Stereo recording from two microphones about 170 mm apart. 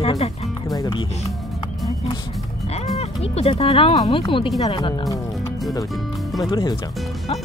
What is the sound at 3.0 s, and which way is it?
Speech, 40° left (ahead or behind).